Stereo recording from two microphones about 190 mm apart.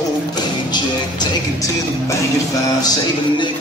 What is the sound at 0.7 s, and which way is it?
Music, 20° left (ahead or behind).